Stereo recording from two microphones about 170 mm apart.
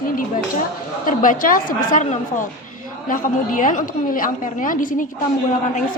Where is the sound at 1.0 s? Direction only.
55° left (ahead or behind).